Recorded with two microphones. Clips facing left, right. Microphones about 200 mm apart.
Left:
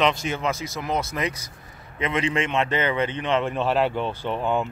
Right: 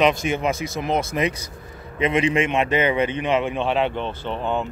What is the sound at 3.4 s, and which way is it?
Speech, centre (ahead or behind).